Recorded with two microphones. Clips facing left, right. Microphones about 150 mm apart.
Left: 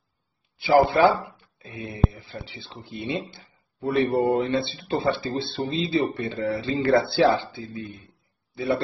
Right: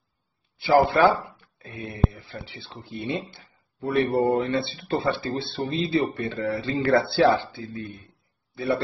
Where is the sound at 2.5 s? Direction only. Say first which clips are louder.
Right 1 dB; 25° left (ahead or behind).